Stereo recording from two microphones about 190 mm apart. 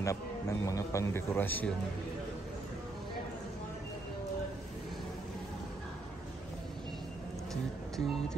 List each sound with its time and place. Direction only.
0.0 s a man's voice: 15° left (ahead or behind)
7.9 s speech: centre (ahead or behind)